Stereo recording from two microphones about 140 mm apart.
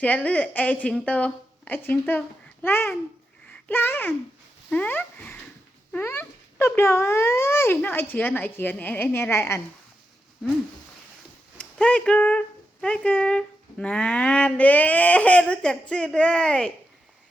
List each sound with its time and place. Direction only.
0.0 s speech: 10° left (ahead or behind)
11.5 s speech: 10° left (ahead or behind)